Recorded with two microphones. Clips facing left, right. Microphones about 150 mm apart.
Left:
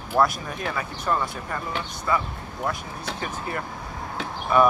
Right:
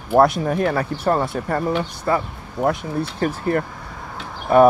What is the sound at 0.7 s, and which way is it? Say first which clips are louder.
Speech: right 7 dB; 45° right (ahead or behind).